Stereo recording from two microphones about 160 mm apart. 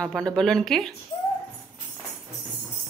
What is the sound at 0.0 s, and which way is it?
Speech, 5° left (ahead or behind).